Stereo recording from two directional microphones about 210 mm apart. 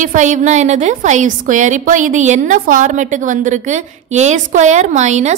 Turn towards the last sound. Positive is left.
turn(degrees=-35)  # may be behind; listen again after turning